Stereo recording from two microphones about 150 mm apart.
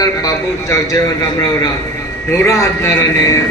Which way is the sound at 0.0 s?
25° left (ahead or behind).